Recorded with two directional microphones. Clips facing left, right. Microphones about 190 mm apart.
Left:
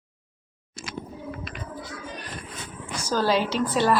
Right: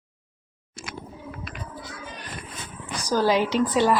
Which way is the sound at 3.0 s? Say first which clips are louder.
Right 2 dB; 15° right (ahead or behind).